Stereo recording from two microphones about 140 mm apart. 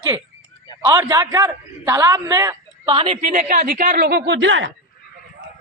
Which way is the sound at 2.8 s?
40° right (ahead or behind).